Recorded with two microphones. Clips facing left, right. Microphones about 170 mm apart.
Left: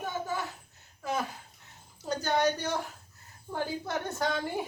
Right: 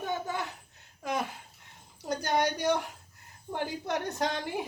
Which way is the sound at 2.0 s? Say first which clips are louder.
Left 1 dB; 15° right (ahead or behind).